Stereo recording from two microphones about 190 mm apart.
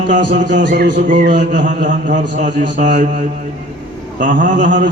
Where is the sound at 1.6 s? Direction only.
45° right (ahead or behind).